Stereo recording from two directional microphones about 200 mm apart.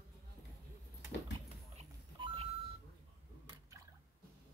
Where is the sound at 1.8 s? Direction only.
30° right (ahead or behind).